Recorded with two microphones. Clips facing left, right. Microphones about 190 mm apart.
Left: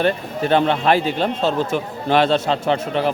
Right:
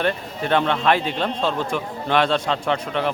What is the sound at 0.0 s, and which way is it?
Speech, 35° left (ahead or behind).